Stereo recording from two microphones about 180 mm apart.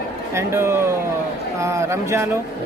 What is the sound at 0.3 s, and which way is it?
Speech, 15° right (ahead or behind).